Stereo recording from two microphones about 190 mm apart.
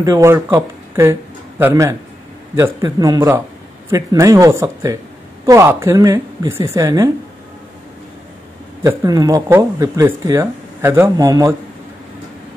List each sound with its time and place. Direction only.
0.0 s speech: 15° right (ahead or behind)
8.8 s speech: 20° right (ahead or behind)